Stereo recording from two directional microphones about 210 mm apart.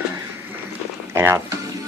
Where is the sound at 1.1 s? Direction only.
10° right (ahead or behind).